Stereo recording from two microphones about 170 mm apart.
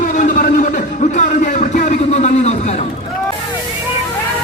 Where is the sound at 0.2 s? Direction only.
50° left (ahead or behind).